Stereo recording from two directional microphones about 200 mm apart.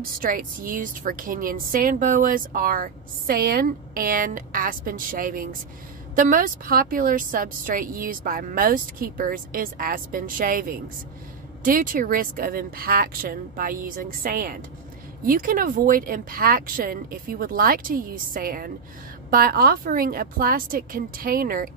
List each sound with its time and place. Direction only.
0.2 s speech: 45° right (ahead or behind)